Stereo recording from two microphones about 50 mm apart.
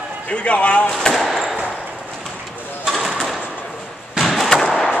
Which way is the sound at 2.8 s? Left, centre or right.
Centre.